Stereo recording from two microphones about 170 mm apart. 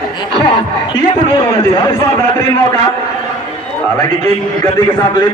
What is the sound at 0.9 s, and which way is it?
A man's voice, 20° left (ahead or behind).